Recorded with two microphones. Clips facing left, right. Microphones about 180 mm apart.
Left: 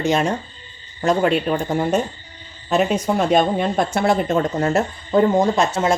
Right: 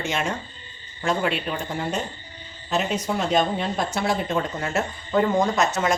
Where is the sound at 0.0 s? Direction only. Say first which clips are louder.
Left 8 dB; 35° left (ahead or behind).